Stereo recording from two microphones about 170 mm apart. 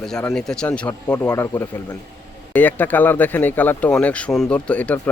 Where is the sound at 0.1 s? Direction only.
5° left (ahead or behind).